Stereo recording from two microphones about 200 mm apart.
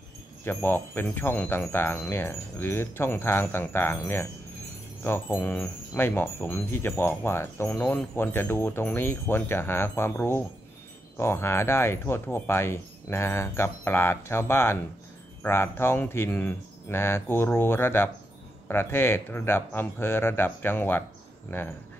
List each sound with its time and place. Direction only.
0.5 s speech: 10° left (ahead or behind)